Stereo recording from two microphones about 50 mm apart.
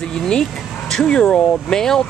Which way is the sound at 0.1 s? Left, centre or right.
Centre.